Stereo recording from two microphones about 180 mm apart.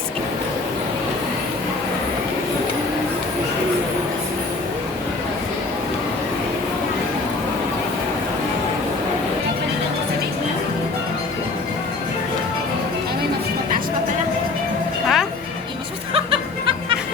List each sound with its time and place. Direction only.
15.0 s music: centre (ahead or behind)
16.1 s music: 30° right (ahead or behind)